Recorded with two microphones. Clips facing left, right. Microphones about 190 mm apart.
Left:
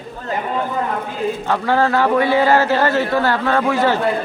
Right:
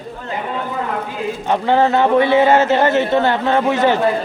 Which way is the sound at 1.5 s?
20° right (ahead or behind).